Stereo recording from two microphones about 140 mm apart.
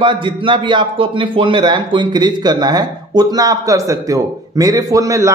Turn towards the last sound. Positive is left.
turn(degrees=-25)  # may be behind; listen again after turning